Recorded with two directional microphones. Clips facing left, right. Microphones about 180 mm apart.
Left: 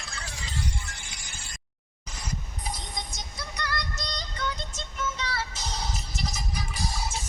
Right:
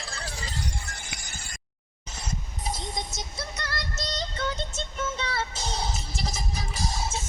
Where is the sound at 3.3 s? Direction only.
25° right (ahead or behind).